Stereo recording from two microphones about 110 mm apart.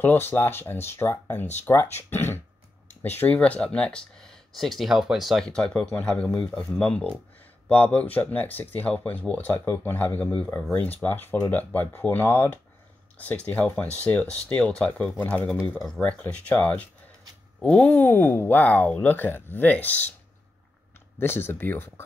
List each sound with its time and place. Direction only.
0.0 s speech: 20° left (ahead or behind)
21.2 s speech: 20° left (ahead or behind)